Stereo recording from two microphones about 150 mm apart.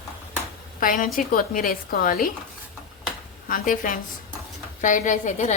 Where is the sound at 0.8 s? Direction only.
60° left (ahead or behind).